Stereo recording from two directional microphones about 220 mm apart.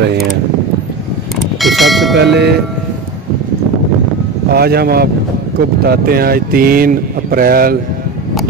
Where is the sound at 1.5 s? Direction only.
Centre (ahead or behind).